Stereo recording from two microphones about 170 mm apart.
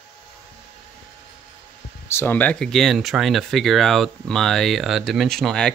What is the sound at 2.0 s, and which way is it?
Speech, 15° left (ahead or behind).